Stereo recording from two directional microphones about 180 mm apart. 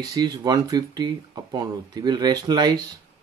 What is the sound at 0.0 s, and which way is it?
Speech, 20° right (ahead or behind).